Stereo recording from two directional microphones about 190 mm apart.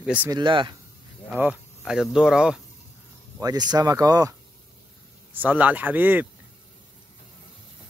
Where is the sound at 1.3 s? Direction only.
5° right (ahead or behind).